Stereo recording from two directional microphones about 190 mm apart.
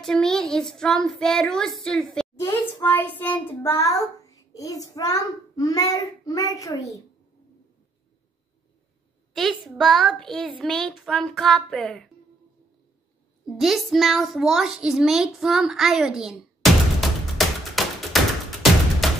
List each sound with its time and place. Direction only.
0.0 s a woman's voice: 5° left (ahead or behind)
9.3 s a woman's voice: centre (ahead or behind)
13.6 s a sound: centre (ahead or behind)